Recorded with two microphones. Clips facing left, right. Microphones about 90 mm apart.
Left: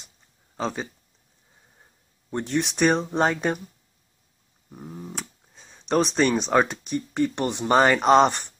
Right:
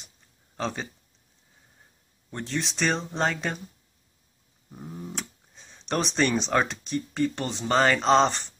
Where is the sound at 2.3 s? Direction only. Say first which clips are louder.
Left 6 dB; 15° left (ahead or behind).